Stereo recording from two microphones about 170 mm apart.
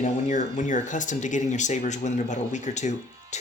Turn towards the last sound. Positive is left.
turn(degrees=45)  # may be behind; listen again after turning